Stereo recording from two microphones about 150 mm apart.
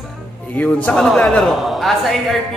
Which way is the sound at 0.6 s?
10° left (ahead or behind).